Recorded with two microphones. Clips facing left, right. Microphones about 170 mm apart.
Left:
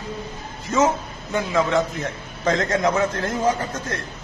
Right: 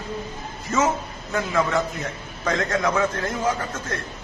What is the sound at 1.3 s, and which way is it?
Speech, 20° left (ahead or behind).